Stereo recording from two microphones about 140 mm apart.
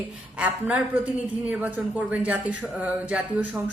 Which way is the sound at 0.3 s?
10° right (ahead or behind).